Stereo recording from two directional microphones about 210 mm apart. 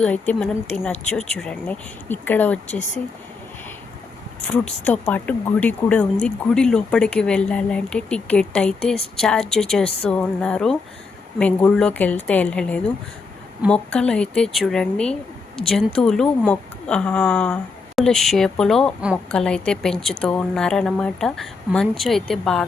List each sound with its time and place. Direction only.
0.0 s speech: 5° left (ahead or behind)
2.6 s speech: 35° left (ahead or behind)
4.8 s speech: 5° left (ahead or behind)